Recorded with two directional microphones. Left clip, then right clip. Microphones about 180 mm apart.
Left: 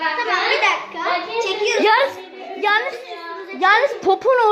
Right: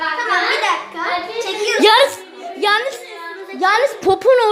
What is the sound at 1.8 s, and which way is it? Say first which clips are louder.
Music: right 5 dB; 45° right (ahead or behind).